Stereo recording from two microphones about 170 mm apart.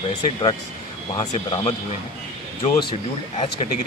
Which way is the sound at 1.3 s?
35° left (ahead or behind).